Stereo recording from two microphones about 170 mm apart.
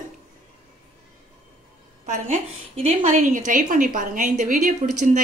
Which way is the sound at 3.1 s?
50° right (ahead or behind).